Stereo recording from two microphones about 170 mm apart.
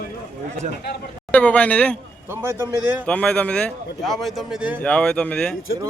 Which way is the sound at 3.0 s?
5° left (ahead or behind).